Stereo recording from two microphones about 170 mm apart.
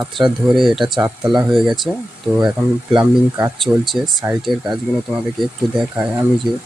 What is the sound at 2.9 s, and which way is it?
Speech, 10° right (ahead or behind).